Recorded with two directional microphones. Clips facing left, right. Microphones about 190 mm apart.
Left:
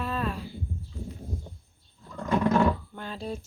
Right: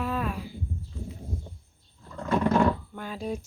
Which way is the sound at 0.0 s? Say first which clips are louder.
Right 1 dB; 10° right (ahead or behind).